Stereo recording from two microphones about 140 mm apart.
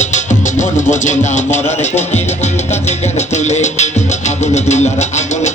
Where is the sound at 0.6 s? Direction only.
60° left (ahead or behind).